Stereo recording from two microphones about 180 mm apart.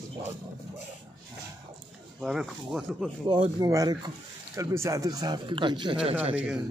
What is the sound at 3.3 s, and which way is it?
Speech, 30° right (ahead or behind).